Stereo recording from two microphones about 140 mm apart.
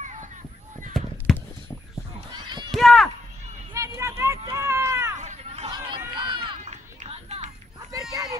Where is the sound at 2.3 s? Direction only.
30° right (ahead or behind).